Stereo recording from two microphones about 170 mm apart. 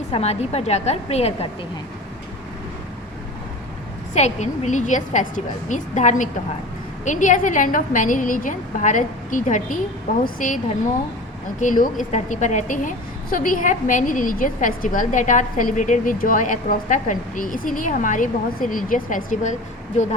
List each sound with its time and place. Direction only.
0.1 s a woman's voice: 40° left (ahead or behind)
4.1 s a woman's voice: 40° left (ahead or behind)
11.6 s a woman's voice: 50° left (ahead or behind)